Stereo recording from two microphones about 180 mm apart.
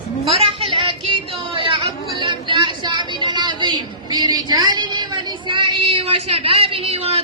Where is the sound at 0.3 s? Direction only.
30° right (ahead or behind).